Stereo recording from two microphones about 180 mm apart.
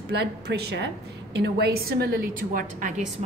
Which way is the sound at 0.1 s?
65° right (ahead or behind).